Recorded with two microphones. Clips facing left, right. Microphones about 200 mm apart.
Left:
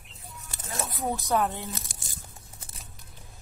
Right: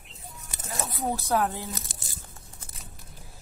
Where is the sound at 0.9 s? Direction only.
Centre (ahead or behind).